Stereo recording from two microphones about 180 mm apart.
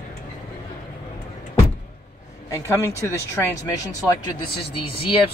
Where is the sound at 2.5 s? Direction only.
15° left (ahead or behind).